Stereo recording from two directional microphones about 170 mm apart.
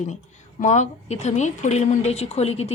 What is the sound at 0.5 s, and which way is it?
A woman's voice, 45° left (ahead or behind).